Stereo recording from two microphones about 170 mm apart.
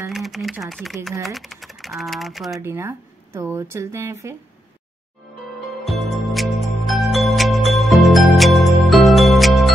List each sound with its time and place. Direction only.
0.1 s speech: centre (ahead or behind)
2.6 s speech: 15° right (ahead or behind)
5.9 s music: centre (ahead or behind)